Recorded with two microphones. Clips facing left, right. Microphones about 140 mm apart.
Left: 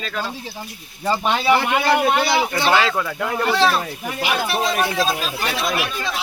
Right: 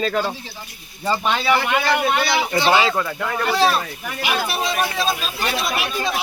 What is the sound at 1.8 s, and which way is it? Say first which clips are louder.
Speech: left 2 dB; 20° left (ahead or behind).